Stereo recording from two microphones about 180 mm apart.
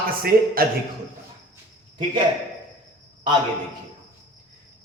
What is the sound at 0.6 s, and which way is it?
Speech, 55° right (ahead or behind).